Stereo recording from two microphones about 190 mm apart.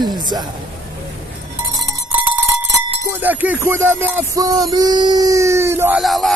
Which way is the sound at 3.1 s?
10° right (ahead or behind).